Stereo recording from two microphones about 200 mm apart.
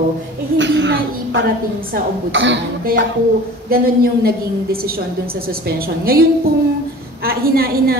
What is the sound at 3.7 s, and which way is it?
Speech, 50° right (ahead or behind).